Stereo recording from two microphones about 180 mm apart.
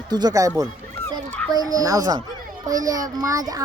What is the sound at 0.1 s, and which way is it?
Speech, 20° right (ahead or behind).